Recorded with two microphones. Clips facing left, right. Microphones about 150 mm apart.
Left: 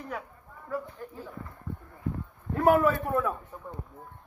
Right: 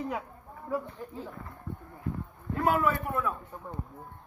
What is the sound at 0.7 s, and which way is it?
Speech, 25° right (ahead or behind).